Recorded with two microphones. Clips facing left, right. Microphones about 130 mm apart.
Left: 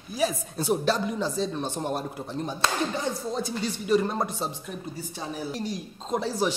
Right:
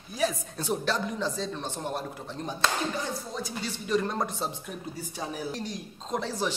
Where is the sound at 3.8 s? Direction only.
10° left (ahead or behind).